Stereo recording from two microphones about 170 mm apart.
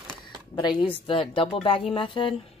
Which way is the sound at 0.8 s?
30° left (ahead or behind).